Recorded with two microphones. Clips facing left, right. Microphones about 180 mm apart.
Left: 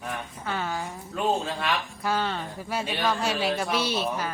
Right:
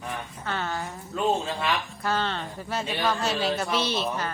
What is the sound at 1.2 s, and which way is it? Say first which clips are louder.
A man's voice: right 1 dB; centre (ahead or behind).